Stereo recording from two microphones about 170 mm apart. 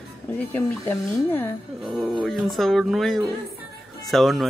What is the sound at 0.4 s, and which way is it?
Speech, 10° left (ahead or behind).